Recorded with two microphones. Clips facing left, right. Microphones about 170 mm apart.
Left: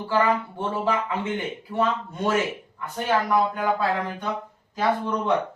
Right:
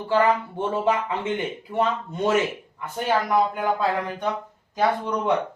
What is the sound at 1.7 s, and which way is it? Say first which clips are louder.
Speech: even; 20° right (ahead or behind).